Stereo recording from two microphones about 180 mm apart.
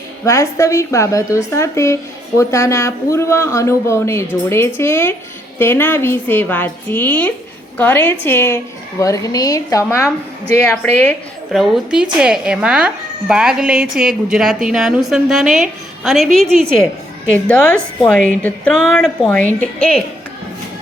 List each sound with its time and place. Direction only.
0.3 s a woman's voice: 15° left (ahead or behind)
11.5 s a woman's voice: 5° right (ahead or behind)